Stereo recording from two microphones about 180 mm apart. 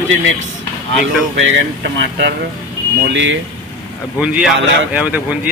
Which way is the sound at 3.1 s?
90° right.